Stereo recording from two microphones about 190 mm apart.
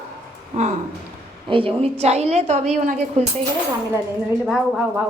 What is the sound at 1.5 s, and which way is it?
A woman's voice, 30° right (ahead or behind).